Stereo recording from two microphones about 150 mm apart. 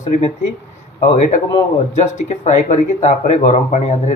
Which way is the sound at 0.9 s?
55° left (ahead or behind).